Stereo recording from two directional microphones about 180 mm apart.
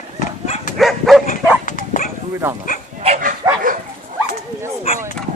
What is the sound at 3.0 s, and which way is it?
Bow-wow, 40° right (ahead or behind).